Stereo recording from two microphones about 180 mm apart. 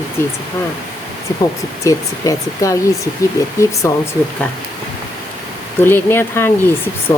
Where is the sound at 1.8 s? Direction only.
20° left (ahead or behind).